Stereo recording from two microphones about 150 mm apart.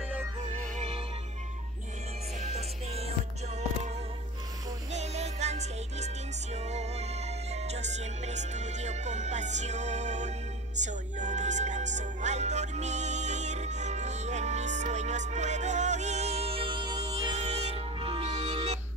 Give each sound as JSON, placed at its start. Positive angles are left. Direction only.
{"t": 0.4, "sound": "music", "side_deg": -50}
{"t": 2.4, "sound": "music", "side_deg": -45}
{"t": 4.9, "sound": "music", "side_deg": -50}
{"t": 17.4, "sound": "music", "side_deg": -45}